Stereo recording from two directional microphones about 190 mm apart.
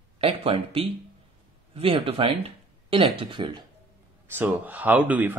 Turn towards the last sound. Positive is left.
turn(degrees=-10)  # may be behind; listen again after turning